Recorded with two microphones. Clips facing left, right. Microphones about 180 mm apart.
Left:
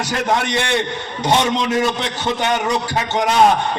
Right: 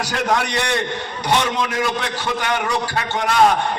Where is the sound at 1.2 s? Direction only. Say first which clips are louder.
Left 3 dB; 25° left (ahead or behind).